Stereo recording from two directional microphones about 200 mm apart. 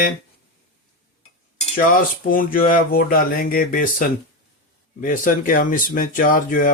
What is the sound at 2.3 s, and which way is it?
Speech, 45° left (ahead or behind).